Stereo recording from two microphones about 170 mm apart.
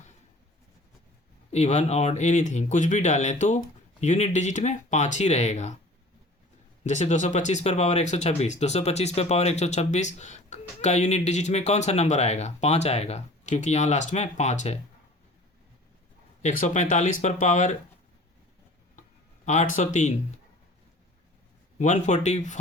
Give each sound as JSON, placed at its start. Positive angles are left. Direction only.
{"t": 1.5, "sound": "speech", "side_deg": 40}
{"t": 6.8, "sound": "speech", "side_deg": 45}
{"t": 16.4, "sound": "speech", "side_deg": 45}
{"t": 19.5, "sound": "speech", "side_deg": 45}
{"t": 21.8, "sound": "speech", "side_deg": 45}